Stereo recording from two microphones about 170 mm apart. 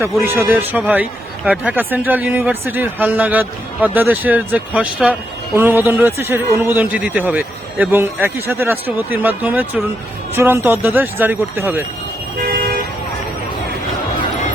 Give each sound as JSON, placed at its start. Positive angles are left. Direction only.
{"t": 0.0, "sound": "speech", "side_deg": -15}
{"t": 12.4, "sound": "vehicle", "side_deg": -60}